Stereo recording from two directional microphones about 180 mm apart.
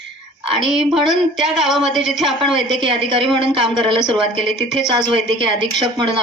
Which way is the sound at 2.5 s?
30° right (ahead or behind).